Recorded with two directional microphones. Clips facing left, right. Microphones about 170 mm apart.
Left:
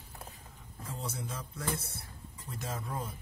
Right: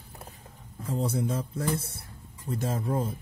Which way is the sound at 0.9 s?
35° right (ahead or behind).